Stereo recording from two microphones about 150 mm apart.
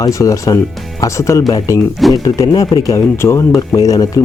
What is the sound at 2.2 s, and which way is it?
Speech, 20° left (ahead or behind).